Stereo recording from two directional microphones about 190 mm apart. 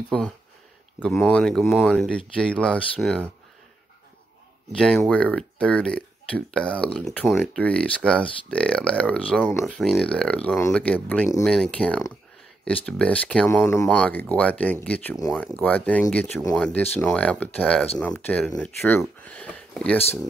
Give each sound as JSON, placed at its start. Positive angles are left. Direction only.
{"t": 0.1, "sound": "speech", "side_deg": 5}
{"t": 4.7, "sound": "speech", "side_deg": 5}